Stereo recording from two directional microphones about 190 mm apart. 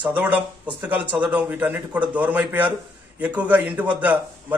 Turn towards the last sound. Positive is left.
turn(degrees=-5)  # may be behind; listen again after turning